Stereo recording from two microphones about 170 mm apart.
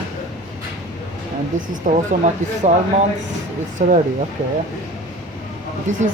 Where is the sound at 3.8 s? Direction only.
50° right (ahead or behind).